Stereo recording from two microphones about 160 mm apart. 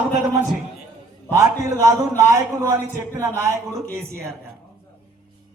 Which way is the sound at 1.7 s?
20° right (ahead or behind).